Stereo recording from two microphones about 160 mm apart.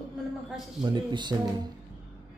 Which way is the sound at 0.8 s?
25° right (ahead or behind).